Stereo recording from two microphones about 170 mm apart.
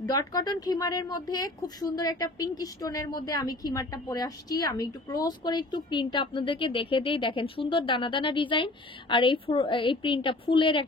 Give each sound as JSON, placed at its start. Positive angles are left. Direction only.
{"t": 0.0, "sound": "speech", "side_deg": 20}